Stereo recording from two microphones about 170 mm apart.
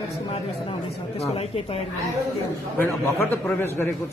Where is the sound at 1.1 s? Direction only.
35° left (ahead or behind).